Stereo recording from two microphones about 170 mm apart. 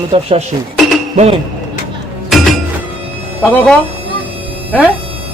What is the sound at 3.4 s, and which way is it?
Speech, 10° left (ahead or behind).